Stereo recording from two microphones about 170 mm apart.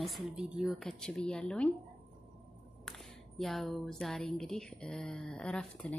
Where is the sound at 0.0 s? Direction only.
Centre (ahead or behind).